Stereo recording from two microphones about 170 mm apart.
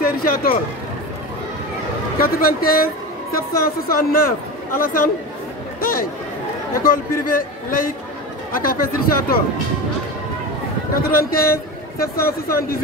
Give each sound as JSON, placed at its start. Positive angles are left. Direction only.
{"t": 0.0, "sound": "a woman's voice", "side_deg": 60}
{"t": 2.1, "sound": "a woman's voice", "side_deg": 60}
{"t": 5.8, "sound": "a sound", "side_deg": 55}
{"t": 6.8, "sound": "a woman's voice", "side_deg": 60}
{"t": 11.0, "sound": "a man's voice", "side_deg": 60}